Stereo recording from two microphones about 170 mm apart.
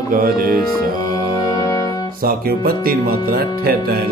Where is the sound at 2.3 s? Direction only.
65° right (ahead or behind).